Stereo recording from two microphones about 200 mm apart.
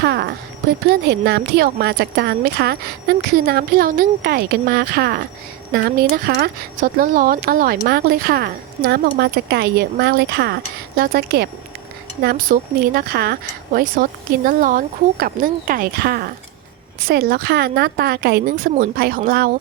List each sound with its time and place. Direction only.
0.0 s a woman's voice: 55° right (ahead or behind)